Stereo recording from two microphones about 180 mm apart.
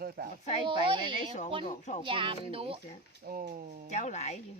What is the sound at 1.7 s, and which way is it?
Speech, 40° left (ahead or behind).